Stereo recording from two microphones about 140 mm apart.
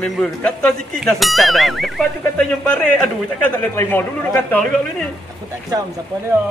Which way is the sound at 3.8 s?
15° left (ahead or behind).